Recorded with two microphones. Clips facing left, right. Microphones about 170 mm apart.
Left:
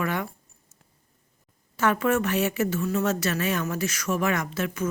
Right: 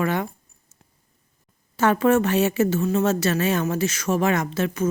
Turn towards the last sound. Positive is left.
turn(degrees=-30)  # may be behind; listen again after turning